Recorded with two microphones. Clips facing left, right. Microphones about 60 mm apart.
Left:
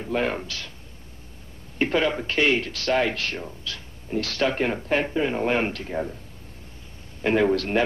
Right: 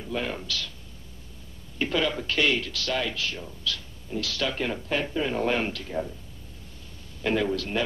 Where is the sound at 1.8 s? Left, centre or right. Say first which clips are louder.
Left 4 dB; left.